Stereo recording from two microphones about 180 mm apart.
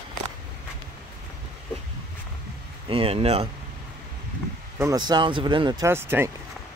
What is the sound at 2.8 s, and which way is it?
Speech, 30° right (ahead or behind).